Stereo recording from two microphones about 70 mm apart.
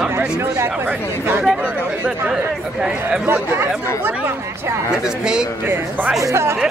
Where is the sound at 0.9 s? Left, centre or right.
Right.